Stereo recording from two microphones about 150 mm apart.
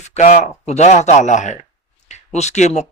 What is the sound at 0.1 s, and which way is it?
Speech, 50° left (ahead or behind).